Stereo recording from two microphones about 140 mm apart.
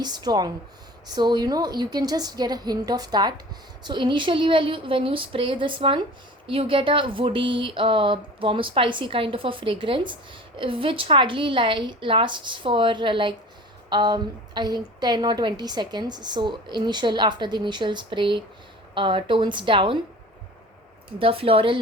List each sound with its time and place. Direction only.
0.0 s a woman's voice: 30° right (ahead or behind)
21.2 s a woman's voice: 40° right (ahead or behind)